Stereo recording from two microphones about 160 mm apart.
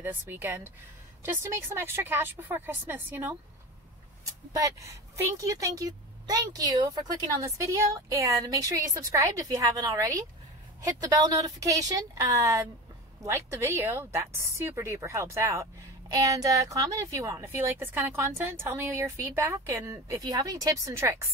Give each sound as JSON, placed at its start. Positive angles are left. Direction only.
{"t": 0.0, "sound": "a woman's voice", "side_deg": -15}
{"t": 4.6, "sound": "a woman's voice", "side_deg": -20}